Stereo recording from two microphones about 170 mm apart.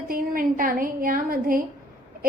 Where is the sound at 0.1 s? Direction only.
55° right (ahead or behind).